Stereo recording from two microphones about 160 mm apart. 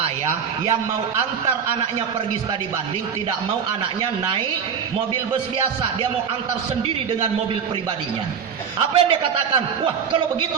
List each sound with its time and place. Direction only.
8.9 s a man's voice: 35° right (ahead or behind)